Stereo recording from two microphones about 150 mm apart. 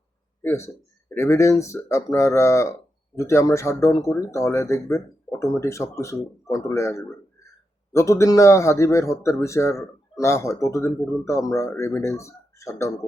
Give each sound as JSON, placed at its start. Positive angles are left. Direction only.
{"t": 0.4, "sound": "a man's voice", "side_deg": 20}